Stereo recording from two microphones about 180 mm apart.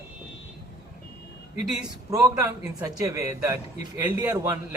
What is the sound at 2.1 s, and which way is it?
A man's voice, 20° right (ahead or behind).